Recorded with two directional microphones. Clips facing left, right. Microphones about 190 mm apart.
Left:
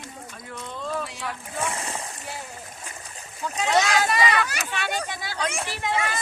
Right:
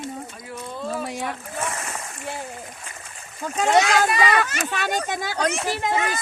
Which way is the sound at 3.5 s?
45° right (ahead or behind).